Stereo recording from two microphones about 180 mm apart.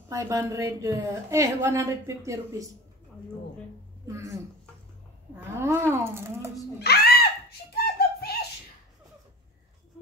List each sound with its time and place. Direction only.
0.1 s a woman's voice: 15° right (ahead or behind)
4.1 s a woman's voice: 15° right (ahead or behind)
5.6 s a woman's voice: 15° right (ahead or behind)
6.8 s a sound: 60° left (ahead or behind)